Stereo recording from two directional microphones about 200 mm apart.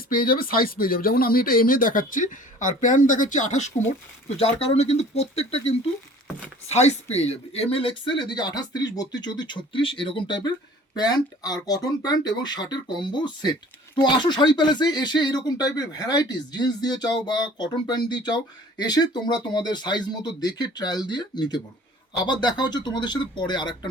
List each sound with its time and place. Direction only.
0.1 s speech: 45° left (ahead or behind); by 23.9 s 20° left (ahead or behind)